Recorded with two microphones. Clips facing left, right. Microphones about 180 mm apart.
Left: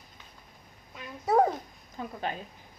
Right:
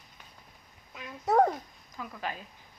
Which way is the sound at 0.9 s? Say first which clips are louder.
Even; centre (ahead or behind).